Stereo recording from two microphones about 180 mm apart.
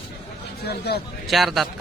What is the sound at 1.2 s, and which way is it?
Speech, centre (ahead or behind).